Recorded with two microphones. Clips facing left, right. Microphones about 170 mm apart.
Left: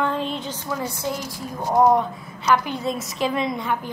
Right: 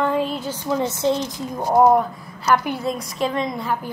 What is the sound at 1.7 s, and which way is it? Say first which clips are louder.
A woman's voice: right 2 dB; 5° right (ahead or behind).